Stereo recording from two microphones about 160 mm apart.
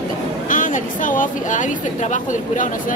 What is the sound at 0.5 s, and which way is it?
A woman's voice, 55° left (ahead or behind).